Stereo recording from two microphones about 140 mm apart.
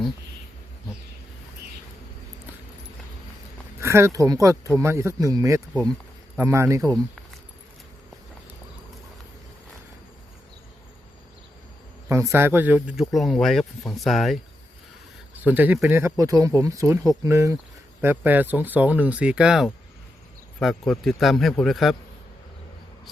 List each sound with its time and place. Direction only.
3.8 s speech: 20° right (ahead or behind)
12.0 s speech: 20° right (ahead or behind); by 14.3 s centre (ahead or behind)
15.4 s speech: 10° right (ahead or behind)